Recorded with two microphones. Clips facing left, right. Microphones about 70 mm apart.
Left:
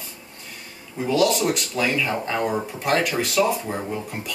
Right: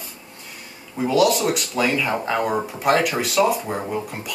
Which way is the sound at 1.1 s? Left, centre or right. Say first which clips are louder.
Right 2 dB; centre.